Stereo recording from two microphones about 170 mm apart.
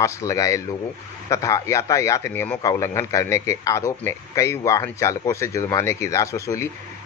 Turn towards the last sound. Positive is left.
turn(degrees=15)  # may be behind; listen again after turning